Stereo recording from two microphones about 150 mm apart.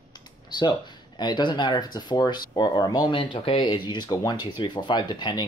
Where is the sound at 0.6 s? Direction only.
30° left (ahead or behind).